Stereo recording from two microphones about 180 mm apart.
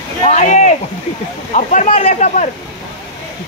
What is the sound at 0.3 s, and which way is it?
Speech, 40° left (ahead or behind).